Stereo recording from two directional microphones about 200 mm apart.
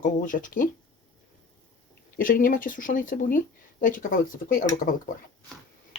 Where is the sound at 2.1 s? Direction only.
45° left (ahead or behind).